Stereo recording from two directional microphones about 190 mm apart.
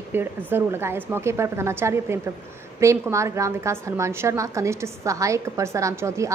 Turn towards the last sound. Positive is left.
turn(degrees=-15)  # may be behind; listen again after turning